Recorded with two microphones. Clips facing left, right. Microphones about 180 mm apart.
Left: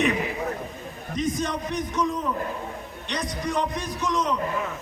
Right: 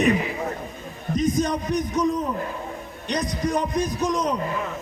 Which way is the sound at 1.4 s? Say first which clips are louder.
Right 5 dB; 40° right (ahead or behind).